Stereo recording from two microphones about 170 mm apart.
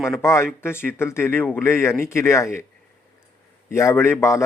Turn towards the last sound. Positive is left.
turn(degrees=15)  # may be behind; listen again after turning